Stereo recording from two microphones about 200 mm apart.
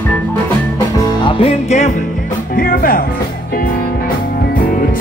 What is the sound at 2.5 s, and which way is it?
Music, 45° left (ahead or behind).